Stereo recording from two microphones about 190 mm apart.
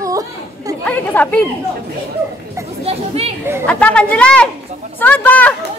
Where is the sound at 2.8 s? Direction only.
30° right (ahead or behind).